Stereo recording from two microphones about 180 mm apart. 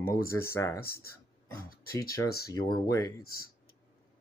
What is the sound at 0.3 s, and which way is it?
Speech, 15° left (ahead or behind).